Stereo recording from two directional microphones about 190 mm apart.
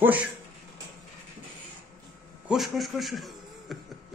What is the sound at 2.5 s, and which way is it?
A man's voice, centre (ahead or behind).